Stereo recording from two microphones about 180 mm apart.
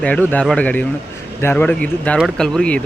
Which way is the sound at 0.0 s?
10° left (ahead or behind).